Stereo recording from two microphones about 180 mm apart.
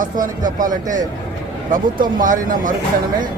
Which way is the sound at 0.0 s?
45° right (ahead or behind).